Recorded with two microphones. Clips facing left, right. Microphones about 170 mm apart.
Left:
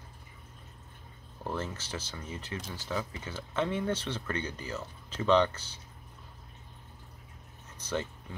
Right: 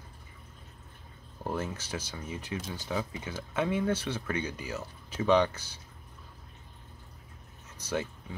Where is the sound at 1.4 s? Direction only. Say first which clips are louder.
Right 2 dB; 10° right (ahead or behind).